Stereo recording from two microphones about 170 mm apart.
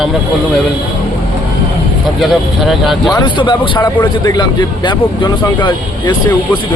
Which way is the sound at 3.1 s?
30° left (ahead or behind).